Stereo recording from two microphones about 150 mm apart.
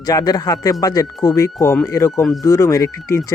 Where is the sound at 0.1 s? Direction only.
25° left (ahead or behind).